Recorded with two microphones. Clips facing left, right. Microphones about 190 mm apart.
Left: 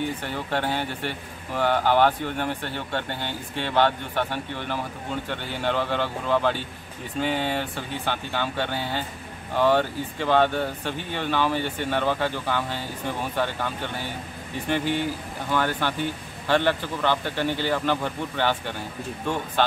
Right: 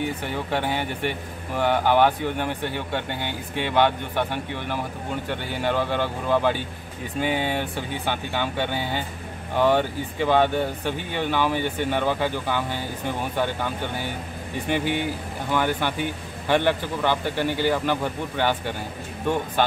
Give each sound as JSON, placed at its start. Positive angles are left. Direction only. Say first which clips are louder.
{"t": 0.2, "sound": "speech", "louder": "right 1 dB", "side_deg": -15}
{"t": 15.5, "sound": "speech", "louder": "right 1 dB", "side_deg": -15}